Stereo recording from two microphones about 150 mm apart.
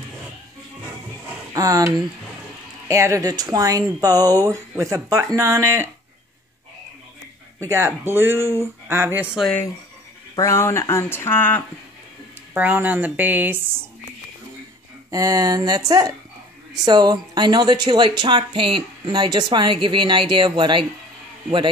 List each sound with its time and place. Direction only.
1.5 s speech: 25° right (ahead or behind)
7.6 s speech: 20° right (ahead or behind)
10.3 s speech: 20° left (ahead or behind)
12.5 s speech: 10° right (ahead or behind)
15.0 s speech: 25° right (ahead or behind)